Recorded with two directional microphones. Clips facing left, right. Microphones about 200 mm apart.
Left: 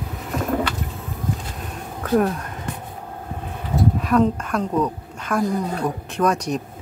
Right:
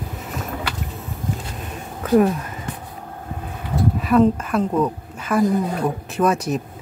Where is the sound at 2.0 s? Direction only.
5° right (ahead or behind).